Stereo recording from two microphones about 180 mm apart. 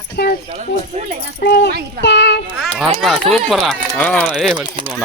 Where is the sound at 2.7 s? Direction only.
Centre (ahead or behind).